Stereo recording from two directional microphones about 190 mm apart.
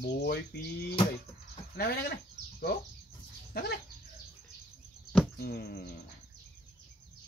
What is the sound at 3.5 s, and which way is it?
Dog, 55° left (ahead or behind).